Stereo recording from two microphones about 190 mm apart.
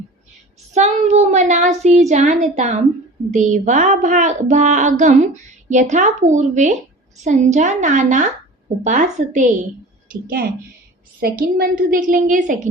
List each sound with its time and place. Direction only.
0.7 s speech: 35° right (ahead or behind)
10.1 s a woman's voice: 50° right (ahead or behind)